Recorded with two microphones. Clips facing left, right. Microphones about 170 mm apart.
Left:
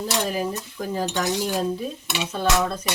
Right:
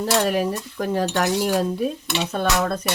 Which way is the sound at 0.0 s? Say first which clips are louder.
Right 5 dB; 70° right (ahead or behind).